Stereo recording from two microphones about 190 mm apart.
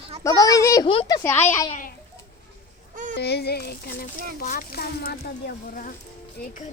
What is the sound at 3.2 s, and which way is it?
Speech, 60° left (ahead or behind).